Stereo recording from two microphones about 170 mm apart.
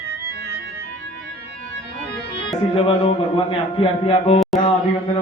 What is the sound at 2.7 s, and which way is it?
A man's voice, 35° left (ahead or behind).